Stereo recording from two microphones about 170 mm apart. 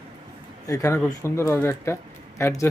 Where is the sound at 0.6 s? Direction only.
20° left (ahead or behind).